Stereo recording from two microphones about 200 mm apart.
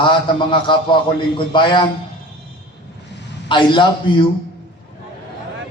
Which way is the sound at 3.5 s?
25° left (ahead or behind).